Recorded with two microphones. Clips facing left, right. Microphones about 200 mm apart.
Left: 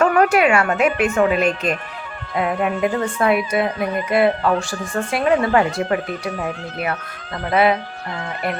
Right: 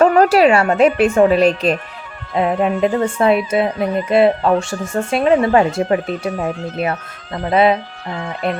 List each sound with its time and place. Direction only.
0.0 s a woman's voice: 35° right (ahead or behind)